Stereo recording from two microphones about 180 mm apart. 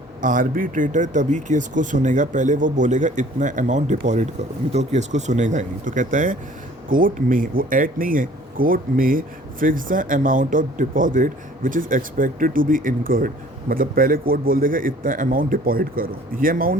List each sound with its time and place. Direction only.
0.2 s speech: 45° right (ahead or behind)